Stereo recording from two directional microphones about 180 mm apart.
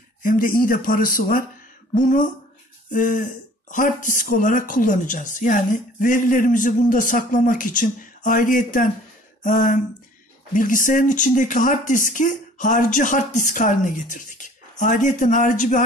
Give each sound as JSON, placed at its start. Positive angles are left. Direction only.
{"t": 0.2, "sound": "speech", "side_deg": 50}